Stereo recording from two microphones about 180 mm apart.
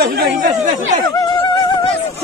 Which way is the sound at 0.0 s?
60° right (ahead or behind).